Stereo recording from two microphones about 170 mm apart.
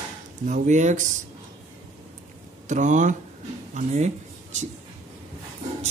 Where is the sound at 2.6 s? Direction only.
45° right (ahead or behind).